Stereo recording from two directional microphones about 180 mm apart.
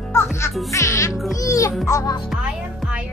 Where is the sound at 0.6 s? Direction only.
15° left (ahead or behind).